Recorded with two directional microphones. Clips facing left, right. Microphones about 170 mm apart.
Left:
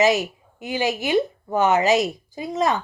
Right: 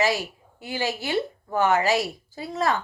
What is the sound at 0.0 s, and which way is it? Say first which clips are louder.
Speech: left 6 dB; 20° left (ahead or behind).